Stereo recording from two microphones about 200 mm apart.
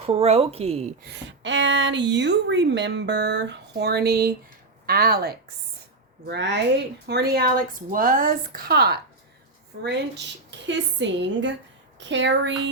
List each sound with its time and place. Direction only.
0.0 s speech: 30° right (ahead or behind)
1.0 s a woman's voice: 65° right (ahead or behind)